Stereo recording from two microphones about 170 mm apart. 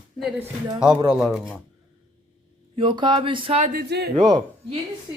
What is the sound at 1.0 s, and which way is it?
Speech, 5° right (ahead or behind).